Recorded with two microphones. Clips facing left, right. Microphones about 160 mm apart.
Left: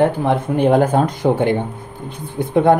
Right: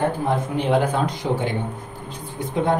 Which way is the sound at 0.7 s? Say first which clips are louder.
Left 5 dB; 45° left (ahead or behind).